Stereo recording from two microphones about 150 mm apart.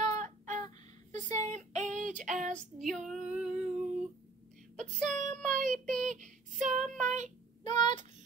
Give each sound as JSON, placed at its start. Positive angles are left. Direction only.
{"t": 0.0, "sound": "a sound", "side_deg": -55}
{"t": 1.5, "sound": "female singing", "side_deg": -55}
{"t": 2.5, "sound": "female singing", "side_deg": 0}
{"t": 5.0, "sound": "child singing", "side_deg": -55}
{"t": 7.6, "sound": "child singing", "side_deg": 30}